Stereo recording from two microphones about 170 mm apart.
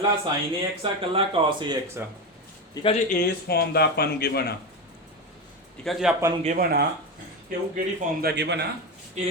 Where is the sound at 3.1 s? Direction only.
65° left (ahead or behind).